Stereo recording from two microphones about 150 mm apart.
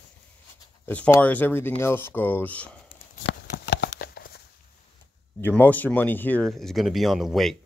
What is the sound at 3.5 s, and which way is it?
Clip-clop, 90° left.